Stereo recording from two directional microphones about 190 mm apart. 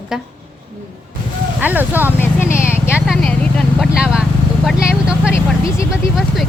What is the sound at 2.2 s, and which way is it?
Vehicle, 15° left (ahead or behind).